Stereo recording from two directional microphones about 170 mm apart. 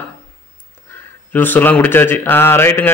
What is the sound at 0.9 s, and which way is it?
Speech, 10° left (ahead or behind).